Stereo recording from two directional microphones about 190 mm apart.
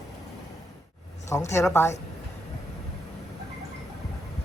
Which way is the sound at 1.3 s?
15° left (ahead or behind).